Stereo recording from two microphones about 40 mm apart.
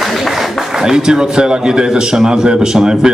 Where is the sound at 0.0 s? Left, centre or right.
Centre.